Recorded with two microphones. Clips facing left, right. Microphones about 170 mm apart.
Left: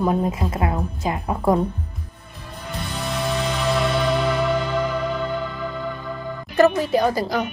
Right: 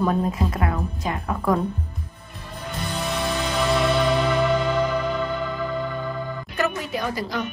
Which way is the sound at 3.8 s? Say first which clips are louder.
Even; centre (ahead or behind).